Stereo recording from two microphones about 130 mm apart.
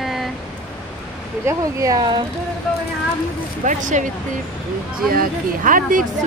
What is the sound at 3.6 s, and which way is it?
Speech, 75° right (ahead or behind).